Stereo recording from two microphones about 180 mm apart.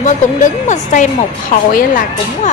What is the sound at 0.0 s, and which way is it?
Speech, 45° left (ahead or behind).